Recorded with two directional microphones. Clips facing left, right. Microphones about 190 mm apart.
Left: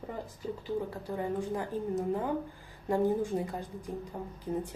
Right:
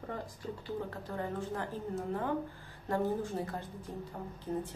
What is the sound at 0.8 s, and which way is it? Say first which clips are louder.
A woman's voice: left 4 dB; 10° left (ahead or behind).